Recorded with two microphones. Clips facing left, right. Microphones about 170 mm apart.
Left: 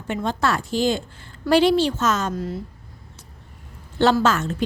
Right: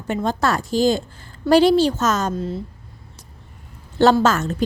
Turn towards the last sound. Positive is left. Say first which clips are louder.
# right 2 dB
turn(degrees=-40)  # may be behind; listen again after turning